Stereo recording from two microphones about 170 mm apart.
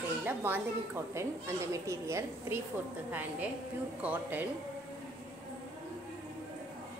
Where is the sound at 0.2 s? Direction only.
10° right (ahead or behind).